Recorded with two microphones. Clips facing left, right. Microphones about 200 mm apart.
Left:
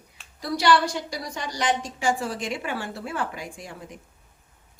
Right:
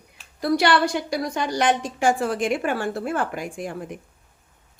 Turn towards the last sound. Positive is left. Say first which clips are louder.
# right 8 dB
turn(degrees=-55)  # may be behind; listen again after turning